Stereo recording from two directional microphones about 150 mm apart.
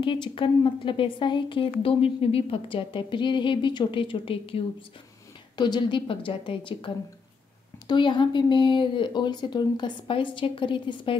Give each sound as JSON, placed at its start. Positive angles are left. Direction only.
{"t": 0.0, "sound": "a woman's voice", "side_deg": 35}
{"t": 5.6, "sound": "a woman's voice", "side_deg": 30}
{"t": 7.9, "sound": "a woman's voice", "side_deg": 30}